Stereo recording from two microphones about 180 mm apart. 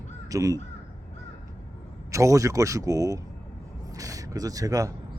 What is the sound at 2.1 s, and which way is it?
Speech, 15° right (ahead or behind).